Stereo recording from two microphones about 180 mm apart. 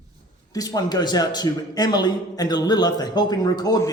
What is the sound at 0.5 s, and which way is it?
A man's voice, 20° left (ahead or behind).